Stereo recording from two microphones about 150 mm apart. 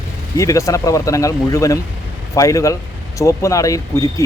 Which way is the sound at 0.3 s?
20° left (ahead or behind).